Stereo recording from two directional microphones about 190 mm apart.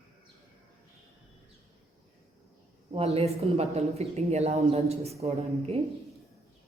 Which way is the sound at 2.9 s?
30° right (ahead or behind).